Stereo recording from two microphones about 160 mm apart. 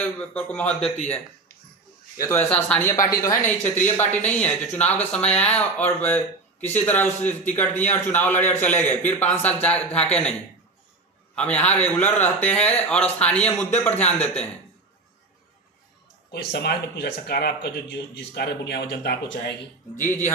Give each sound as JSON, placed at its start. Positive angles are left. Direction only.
{"t": 0.3, "sound": "speech", "side_deg": 10}
{"t": 3.2, "sound": "speech", "side_deg": 20}
{"t": 11.3, "sound": "speech", "side_deg": 10}
{"t": 16.3, "sound": "speech", "side_deg": 90}
{"t": 20.1, "sound": "speech", "side_deg": 15}